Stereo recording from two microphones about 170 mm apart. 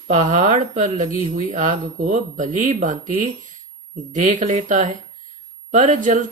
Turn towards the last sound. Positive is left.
turn(degrees=-50)  # may be behind; listen again after turning